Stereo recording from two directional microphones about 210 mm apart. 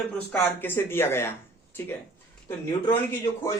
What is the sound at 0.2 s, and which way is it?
Speech, 10° left (ahead or behind).